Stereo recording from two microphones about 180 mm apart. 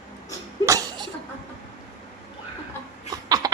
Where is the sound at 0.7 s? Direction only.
20° right (ahead or behind).